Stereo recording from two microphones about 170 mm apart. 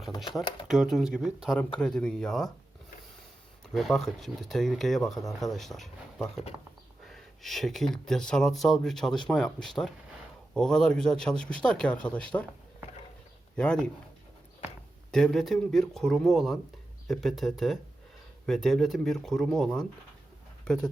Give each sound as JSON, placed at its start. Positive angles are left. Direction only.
{"t": 0.7, "sound": "speech", "side_deg": -5}
{"t": 3.7, "sound": "speech", "side_deg": 0}
{"t": 13.6, "sound": "speech", "side_deg": 5}
{"t": 15.1, "sound": "speech", "side_deg": 5}